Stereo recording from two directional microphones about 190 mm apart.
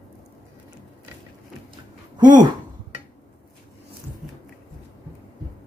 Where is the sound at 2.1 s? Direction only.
20° right (ahead or behind).